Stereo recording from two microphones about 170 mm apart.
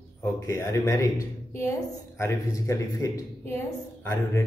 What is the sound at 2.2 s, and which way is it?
A woman's voice, 15° left (ahead or behind).